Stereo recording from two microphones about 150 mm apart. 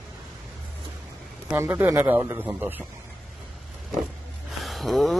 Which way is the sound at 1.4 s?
15° right (ahead or behind).